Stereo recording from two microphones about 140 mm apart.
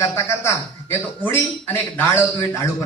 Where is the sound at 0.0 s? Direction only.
20° left (ahead or behind).